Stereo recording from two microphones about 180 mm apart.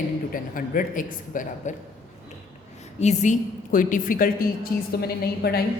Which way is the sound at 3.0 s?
40° left (ahead or behind).